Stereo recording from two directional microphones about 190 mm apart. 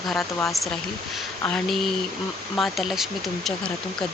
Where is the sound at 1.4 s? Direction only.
5° left (ahead or behind).